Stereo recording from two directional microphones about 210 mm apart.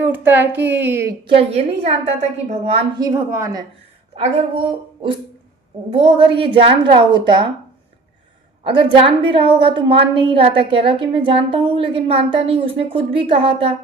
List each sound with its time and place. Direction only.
0.0 s a woman's voice: 10° right (ahead or behind)
1.3 s a woman's voice: 30° right (ahead or behind)
3.0 s a woman's voice: 15° right (ahead or behind)
4.1 s a woman's voice: 30° right (ahead or behind)
8.6 s a woman's voice: 25° right (ahead or behind)